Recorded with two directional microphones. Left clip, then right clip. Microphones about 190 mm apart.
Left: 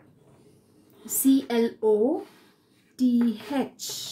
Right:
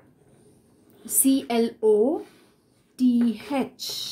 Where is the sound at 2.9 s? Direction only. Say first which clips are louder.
Right 2 dB; 35° right (ahead or behind).